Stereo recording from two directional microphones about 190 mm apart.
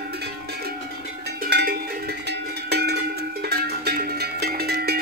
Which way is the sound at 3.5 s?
55° right (ahead or behind).